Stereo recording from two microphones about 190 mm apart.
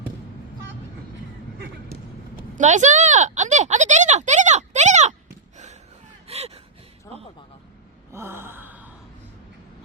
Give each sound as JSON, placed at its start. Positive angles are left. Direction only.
{"t": 1.9, "sound": "a sound", "side_deg": -45}
{"t": 6.2, "sound": "gasp", "side_deg": -35}
{"t": 7.1, "sound": "music", "side_deg": 15}
{"t": 8.1, "sound": "gasp", "side_deg": -10}